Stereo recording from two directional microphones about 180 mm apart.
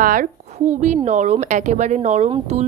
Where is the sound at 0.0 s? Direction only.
50° right (ahead or behind).